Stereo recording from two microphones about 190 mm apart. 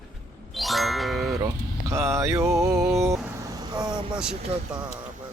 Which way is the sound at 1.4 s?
15° right (ahead or behind).